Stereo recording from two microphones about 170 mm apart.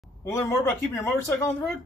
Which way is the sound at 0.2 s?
15° left (ahead or behind).